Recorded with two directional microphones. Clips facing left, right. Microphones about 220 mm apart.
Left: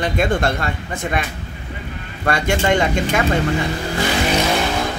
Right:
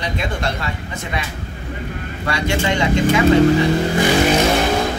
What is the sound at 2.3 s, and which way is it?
Speech, 50° left (ahead or behind).